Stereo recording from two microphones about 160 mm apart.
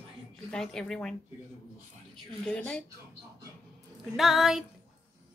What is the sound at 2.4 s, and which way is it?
Speech, 5° left (ahead or behind).